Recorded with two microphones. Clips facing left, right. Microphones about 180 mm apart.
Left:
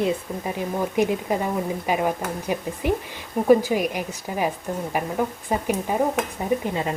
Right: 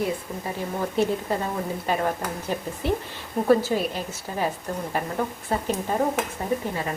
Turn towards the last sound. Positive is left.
turn(degrees=20)  # may be behind; listen again after turning